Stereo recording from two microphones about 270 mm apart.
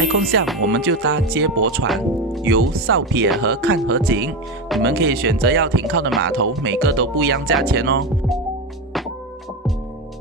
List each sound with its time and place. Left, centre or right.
0.0 s speech: right